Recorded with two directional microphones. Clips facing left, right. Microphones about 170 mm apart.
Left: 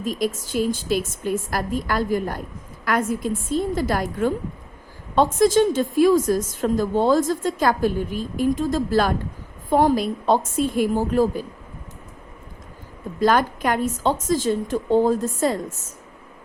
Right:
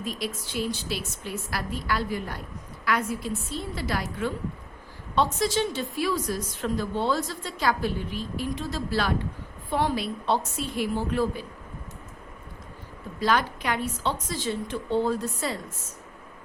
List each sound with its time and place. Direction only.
0.0 s a woman's voice: 45° left (ahead or behind)
13.1 s a woman's voice: 45° left (ahead or behind)